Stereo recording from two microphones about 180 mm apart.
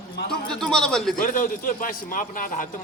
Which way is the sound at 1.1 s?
50° left (ahead or behind).